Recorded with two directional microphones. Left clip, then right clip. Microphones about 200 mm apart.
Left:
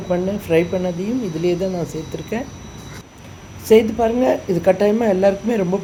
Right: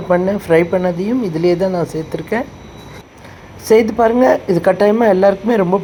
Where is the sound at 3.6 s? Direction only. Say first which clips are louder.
Right 3 dB; 20° right (ahead or behind).